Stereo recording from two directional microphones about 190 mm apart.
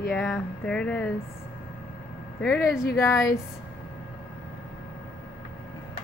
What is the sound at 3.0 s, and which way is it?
Speech, 15° left (ahead or behind).